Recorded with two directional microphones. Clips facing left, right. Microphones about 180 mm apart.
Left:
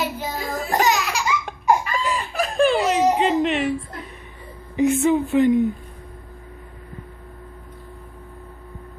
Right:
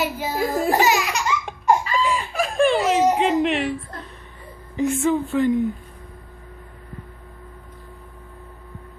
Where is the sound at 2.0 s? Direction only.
Centre (ahead or behind).